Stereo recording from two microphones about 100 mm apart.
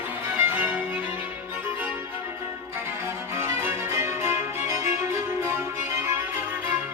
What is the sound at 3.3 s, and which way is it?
Music, 25° right (ahead or behind).